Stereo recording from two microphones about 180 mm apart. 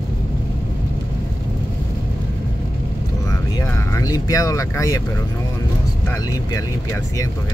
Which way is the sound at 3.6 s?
15° left (ahead or behind).